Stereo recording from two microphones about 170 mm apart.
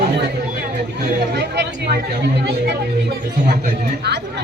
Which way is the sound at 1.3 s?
75° right (ahead or behind).